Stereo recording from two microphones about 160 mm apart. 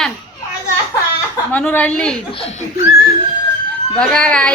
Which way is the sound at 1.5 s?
10° left (ahead or behind).